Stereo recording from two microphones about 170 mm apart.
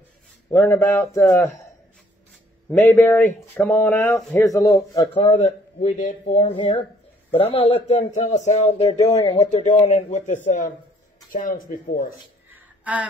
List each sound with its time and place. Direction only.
0.5 s speech: 15° left (ahead or behind)
2.8 s a man's voice: 10° left (ahead or behind)
5.1 s speech: 35° left (ahead or behind)
8.9 s a man's voice: 20° left (ahead or behind)
9.4 s speech: 45° left (ahead or behind)
12.4 s a sound: 10° right (ahead or behind)